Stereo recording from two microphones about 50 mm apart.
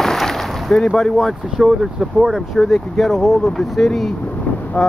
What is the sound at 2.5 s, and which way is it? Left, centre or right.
Speech, centre.